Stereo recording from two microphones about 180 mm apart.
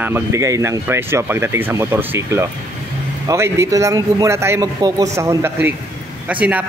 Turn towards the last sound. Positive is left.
turn(degrees=-10)  # may be behind; listen again after turning